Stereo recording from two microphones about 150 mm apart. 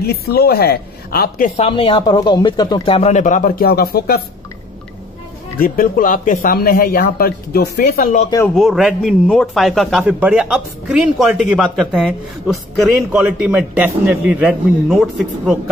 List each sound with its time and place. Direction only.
0.0 s a woman's voice: 90° left
1.6 s speech: 40° left (ahead or behind)
2.0 s speech: 25° left (ahead or behind)
3.2 s speech: 55° left (ahead or behind); by 4.2 s 90° left
5.6 s speech: 65° left (ahead or behind); by 8.1 s 90° left
8.5 s a man's voice: centre (ahead or behind)